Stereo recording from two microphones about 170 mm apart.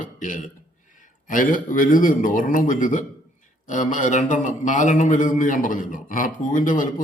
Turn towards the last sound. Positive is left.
turn(degrees=50)  # may be behind; listen again after turning